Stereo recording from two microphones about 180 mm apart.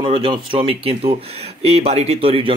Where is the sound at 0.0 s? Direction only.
30° right (ahead or behind).